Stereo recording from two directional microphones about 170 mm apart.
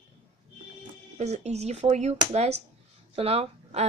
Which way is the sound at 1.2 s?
40° right (ahead or behind).